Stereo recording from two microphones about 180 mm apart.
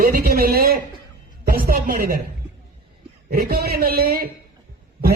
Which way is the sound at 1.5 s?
55° right (ahead or behind).